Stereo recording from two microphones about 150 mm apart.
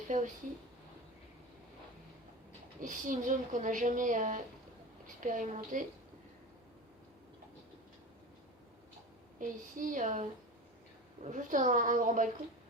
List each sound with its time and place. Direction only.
0.1 s speech: 55° right (ahead or behind)
2.8 s a woman's voice: 60° right (ahead or behind)
9.4 s speech: 60° right (ahead or behind)